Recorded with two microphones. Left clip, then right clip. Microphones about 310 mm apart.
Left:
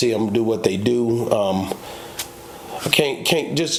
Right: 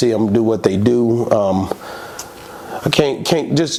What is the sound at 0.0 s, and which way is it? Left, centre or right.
Speech, right.